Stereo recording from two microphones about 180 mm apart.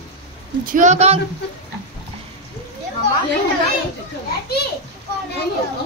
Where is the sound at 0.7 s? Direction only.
45° right (ahead or behind).